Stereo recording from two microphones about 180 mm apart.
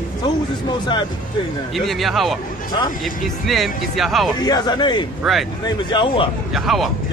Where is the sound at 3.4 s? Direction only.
Centre (ahead or behind).